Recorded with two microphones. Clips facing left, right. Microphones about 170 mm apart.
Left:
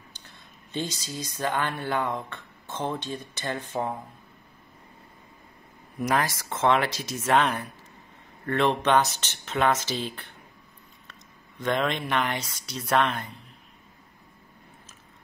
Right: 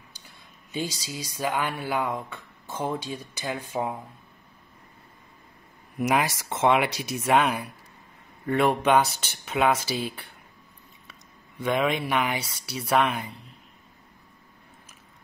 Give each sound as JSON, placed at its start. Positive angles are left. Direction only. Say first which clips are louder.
{"t": 0.7, "sound": "speech", "louder": "right 1 dB", "side_deg": -10}
{"t": 5.9, "sound": "speech", "louder": "right 2 dB", "side_deg": -15}
{"t": 11.6, "sound": "speech", "louder": "right 2 dB", "side_deg": -5}